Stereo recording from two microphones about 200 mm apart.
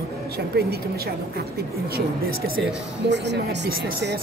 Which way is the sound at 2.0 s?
50° right (ahead or behind).